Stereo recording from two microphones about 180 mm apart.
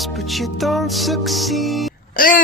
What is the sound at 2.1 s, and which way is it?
Speech, 50° left (ahead or behind).